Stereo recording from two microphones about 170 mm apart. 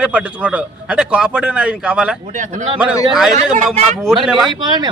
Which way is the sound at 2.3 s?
45° right (ahead or behind).